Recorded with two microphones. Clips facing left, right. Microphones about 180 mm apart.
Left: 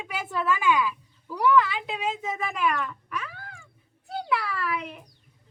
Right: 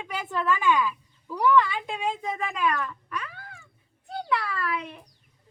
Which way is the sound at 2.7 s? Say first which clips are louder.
Even; 5° left (ahead or behind).